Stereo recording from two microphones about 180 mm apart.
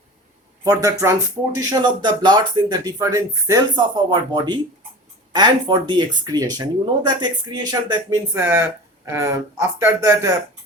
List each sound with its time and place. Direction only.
0.6 s speech: 20° right (ahead or behind)